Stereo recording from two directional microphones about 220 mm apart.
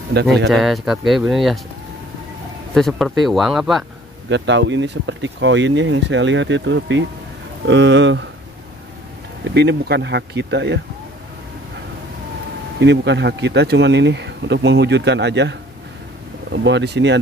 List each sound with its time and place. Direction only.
0.1 s speech: 50° right (ahead or behind)
0.5 s speech: centre (ahead or behind)
2.7 s speech: centre (ahead or behind)
4.3 s speech: 55° right (ahead or behind)
9.5 s speech: 50° right (ahead or behind)
12.7 s speech: 50° right (ahead or behind)
16.5 s speech: 55° right (ahead or behind)